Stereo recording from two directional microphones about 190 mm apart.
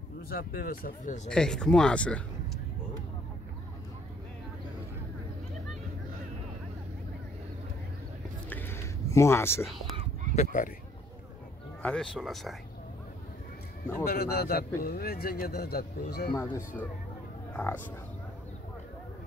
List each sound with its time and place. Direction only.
0.3 s speech: 50° left (ahead or behind)
1.3 s speech: 5° left (ahead or behind)
8.5 s a sound: 10° left (ahead or behind)
10.3 s speech: 40° left (ahead or behind)
11.8 s speech: 5° left (ahead or behind)
14.1 s a man's voice: 60° left (ahead or behind)
16.3 s speech: 15° left (ahead or behind)